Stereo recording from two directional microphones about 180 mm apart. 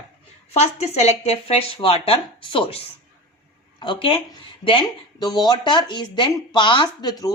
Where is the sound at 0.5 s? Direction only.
35° left (ahead or behind).